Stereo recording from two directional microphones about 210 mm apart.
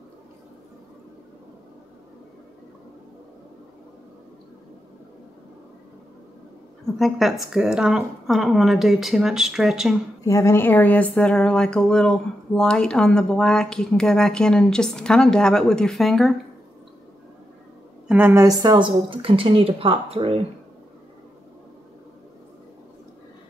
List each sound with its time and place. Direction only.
7.0 s speech: centre (ahead or behind)
10.2 s speech: 15° left (ahead or behind)
18.0 s a woman's voice: 10° right (ahead or behind); by 20.3 s 25° right (ahead or behind)